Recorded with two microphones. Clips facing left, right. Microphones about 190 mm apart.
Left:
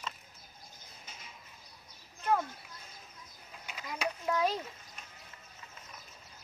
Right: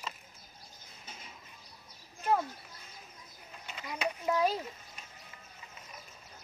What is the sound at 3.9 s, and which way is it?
Speech, 5° right (ahead or behind).